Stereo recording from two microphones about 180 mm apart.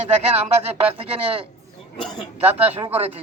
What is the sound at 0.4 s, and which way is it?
Speech, 35° right (ahead or behind).